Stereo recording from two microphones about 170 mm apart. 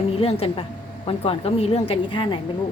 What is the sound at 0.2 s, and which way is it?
A woman's voice, 35° left (ahead or behind).